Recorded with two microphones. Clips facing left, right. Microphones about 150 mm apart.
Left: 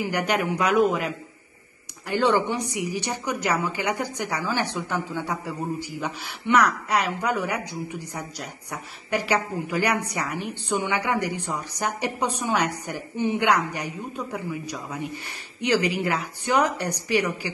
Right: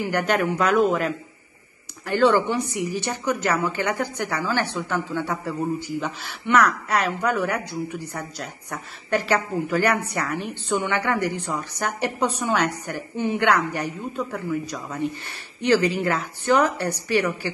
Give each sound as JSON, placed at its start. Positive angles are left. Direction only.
{"t": 0.0, "sound": "speech", "side_deg": 15}